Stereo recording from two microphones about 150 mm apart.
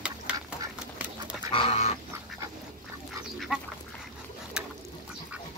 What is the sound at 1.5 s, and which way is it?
Duck, 40° left (ahead or behind).